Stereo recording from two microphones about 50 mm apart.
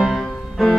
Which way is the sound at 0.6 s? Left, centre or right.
Centre.